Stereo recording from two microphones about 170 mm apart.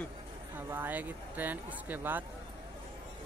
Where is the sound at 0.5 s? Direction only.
10° right (ahead or behind).